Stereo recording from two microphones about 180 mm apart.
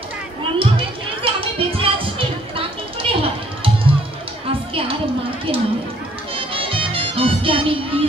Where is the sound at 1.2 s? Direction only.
30° right (ahead or behind).